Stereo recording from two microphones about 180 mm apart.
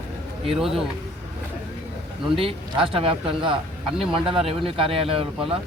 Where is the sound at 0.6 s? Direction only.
Centre (ahead or behind).